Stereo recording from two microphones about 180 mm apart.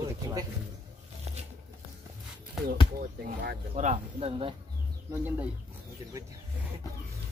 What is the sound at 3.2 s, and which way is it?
Speech, 60° right (ahead or behind).